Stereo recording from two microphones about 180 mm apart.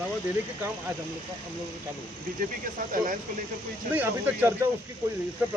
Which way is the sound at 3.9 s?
10° right (ahead or behind).